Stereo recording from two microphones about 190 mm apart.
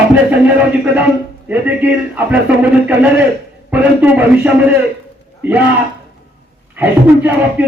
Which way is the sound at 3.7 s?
10° right (ahead or behind).